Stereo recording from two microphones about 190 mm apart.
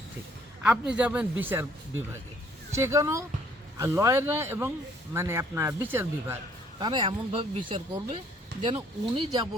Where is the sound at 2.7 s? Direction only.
15° right (ahead or behind).